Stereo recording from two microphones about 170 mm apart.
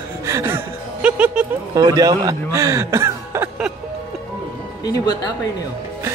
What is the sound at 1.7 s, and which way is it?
A man's voice, 20° right (ahead or behind).